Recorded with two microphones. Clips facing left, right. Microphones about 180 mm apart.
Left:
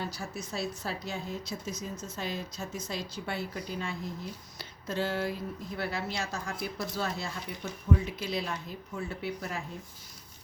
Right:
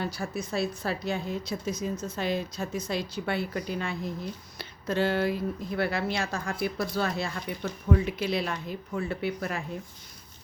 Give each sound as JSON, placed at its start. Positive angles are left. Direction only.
{"t": 0.0, "sound": "a woman's voice", "side_deg": -60}
{"t": 4.5, "sound": "a sound", "side_deg": -65}
{"t": 5.7, "sound": "a woman's voice", "side_deg": -65}